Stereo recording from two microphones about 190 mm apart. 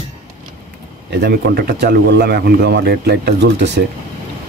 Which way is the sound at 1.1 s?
60° right (ahead or behind).